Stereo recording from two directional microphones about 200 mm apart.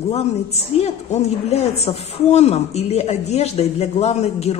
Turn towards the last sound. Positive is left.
turn(degrees=30)  # may be behind; listen again after turning